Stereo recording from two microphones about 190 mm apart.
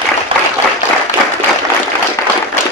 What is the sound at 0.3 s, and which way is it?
Applause, 25° right (ahead or behind).